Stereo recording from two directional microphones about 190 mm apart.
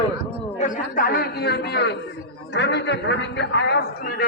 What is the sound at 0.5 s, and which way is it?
A man's voice, 40° left (ahead or behind).